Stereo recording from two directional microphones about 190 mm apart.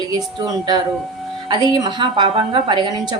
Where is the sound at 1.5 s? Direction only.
20° right (ahead or behind).